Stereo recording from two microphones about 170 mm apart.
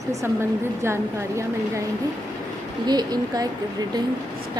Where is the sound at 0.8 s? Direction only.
15° right (ahead or behind).